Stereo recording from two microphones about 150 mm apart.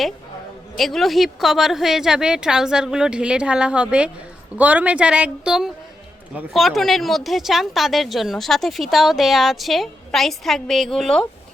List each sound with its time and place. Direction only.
0.8 s a woman's voice: centre (ahead or behind)